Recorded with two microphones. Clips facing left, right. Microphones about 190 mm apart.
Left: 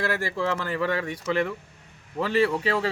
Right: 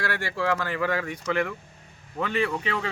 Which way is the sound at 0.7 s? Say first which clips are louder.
Left 1 dB; 30° left (ahead or behind).